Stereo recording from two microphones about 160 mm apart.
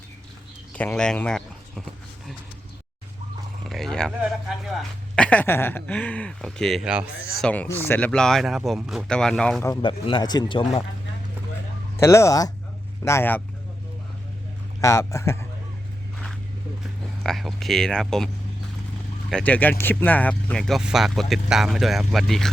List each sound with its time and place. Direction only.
0.7 s a sound: 10° left (ahead or behind)
3.7 s speech: centre (ahead or behind)
7.3 s speech: 5° left (ahead or behind)
9.8 s speech: 30° left (ahead or behind)
11.9 s speech: 15° left (ahead or behind)
14.8 s speech: 20° left (ahead or behind)
17.2 s speech: centre (ahead or behind)
19.3 s speech: 10° left (ahead or behind)